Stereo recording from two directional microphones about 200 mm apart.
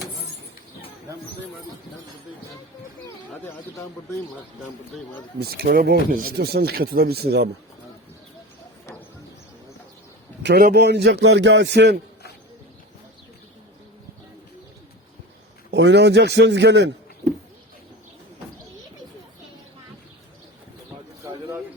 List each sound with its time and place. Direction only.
5.4 s speech: 50° right (ahead or behind)
10.4 s a man's voice: 50° right (ahead or behind)
15.7 s a man's voice: 60° right (ahead or behind)